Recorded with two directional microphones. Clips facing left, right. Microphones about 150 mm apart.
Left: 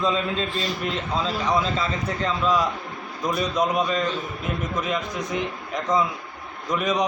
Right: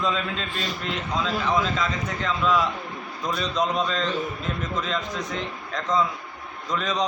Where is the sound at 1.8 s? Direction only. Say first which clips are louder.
Left 2 dB; 35° left (ahead or behind).